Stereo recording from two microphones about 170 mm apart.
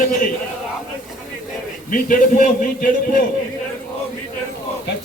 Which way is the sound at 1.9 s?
50° left (ahead or behind).